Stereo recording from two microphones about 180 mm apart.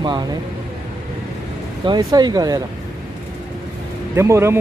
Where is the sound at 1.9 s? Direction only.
20° right (ahead or behind).